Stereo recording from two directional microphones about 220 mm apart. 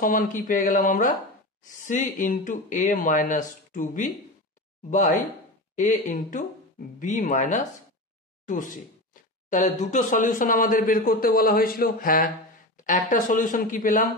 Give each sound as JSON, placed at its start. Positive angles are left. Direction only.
{"t": 0.0, "sound": "speech", "side_deg": 35}
{"t": 5.8, "sound": "speech", "side_deg": 35}